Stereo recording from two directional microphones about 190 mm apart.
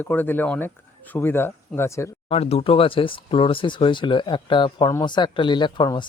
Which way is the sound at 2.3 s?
30° left (ahead or behind).